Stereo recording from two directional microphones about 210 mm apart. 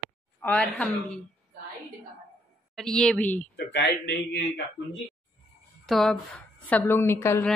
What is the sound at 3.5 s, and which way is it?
Speech, 50° left (ahead or behind).